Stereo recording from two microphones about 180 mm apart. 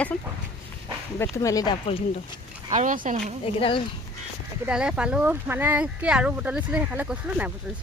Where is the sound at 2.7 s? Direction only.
45° right (ahead or behind).